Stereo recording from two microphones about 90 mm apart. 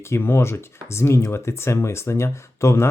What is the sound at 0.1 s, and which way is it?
Speech, 25° left (ahead or behind).